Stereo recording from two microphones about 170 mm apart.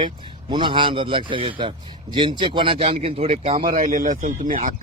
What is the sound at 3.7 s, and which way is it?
Speech, 50° right (ahead or behind).